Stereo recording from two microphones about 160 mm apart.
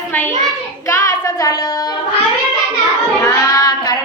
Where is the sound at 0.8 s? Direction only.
20° left (ahead or behind).